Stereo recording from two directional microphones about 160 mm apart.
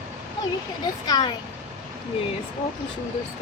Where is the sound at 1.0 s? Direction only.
25° left (ahead or behind).